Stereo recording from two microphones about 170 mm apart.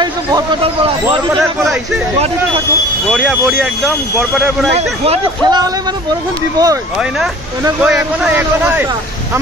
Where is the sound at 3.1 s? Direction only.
5° right (ahead or behind).